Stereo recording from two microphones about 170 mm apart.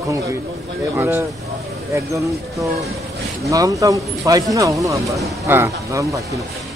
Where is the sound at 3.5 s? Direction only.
20° right (ahead or behind).